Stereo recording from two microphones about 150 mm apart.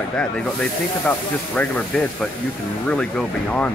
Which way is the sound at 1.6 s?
10° left (ahead or behind).